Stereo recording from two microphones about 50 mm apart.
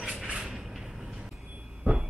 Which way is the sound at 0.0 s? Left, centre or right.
Centre.